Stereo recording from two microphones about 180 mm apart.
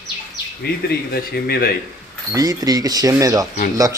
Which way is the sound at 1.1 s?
60° left (ahead or behind).